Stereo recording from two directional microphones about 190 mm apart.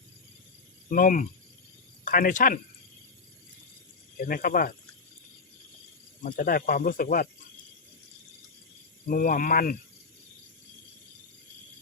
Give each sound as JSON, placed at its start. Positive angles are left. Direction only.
{"t": 0.9, "sound": "speech", "side_deg": 45}
{"t": 4.3, "sound": "speech", "side_deg": 50}
{"t": 6.2, "sound": "speech", "side_deg": 50}
{"t": 9.0, "sound": "speech", "side_deg": 50}